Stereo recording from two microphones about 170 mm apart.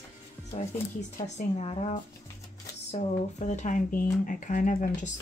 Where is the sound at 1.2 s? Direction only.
40° left (ahead or behind).